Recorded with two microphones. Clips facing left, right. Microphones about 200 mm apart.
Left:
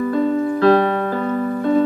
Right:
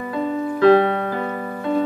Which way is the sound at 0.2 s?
50° left (ahead or behind).